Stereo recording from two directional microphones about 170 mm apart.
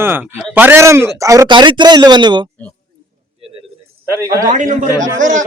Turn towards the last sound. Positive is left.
turn(degrees=-45)  # may be behind; listen again after turning